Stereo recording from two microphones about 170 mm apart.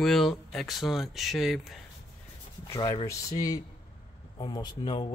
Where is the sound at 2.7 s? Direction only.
30° left (ahead or behind).